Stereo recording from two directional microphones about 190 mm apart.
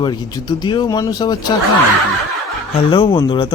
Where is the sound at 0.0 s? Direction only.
20° left (ahead or behind).